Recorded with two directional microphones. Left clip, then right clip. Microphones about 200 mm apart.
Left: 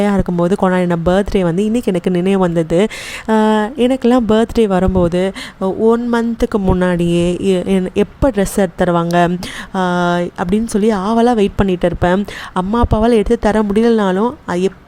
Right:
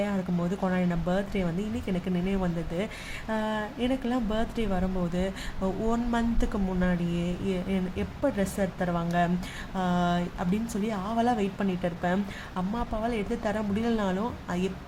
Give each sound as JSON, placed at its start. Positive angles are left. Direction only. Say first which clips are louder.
{"t": 0.0, "sound": "speech", "louder": "left 15 dB", "side_deg": 45}